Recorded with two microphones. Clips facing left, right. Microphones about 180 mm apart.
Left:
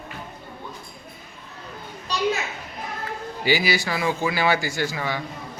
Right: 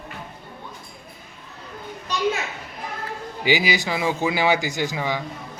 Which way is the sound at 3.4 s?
15° right (ahead or behind).